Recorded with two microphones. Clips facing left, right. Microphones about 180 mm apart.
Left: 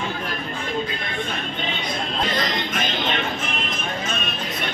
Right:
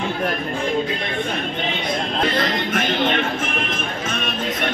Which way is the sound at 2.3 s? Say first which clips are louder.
Right 4 dB; 55° right (ahead or behind).